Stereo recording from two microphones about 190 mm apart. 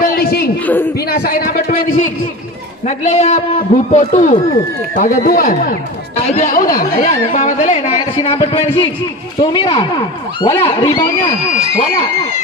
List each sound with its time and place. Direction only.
0.0 s a sound: 50° left (ahead or behind)
0.9 s a man's voice: 50° left (ahead or behind)
2.9 s a man's voice: 35° left (ahead or behind)